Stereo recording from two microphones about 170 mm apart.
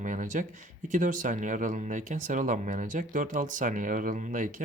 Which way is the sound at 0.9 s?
50° right (ahead or behind).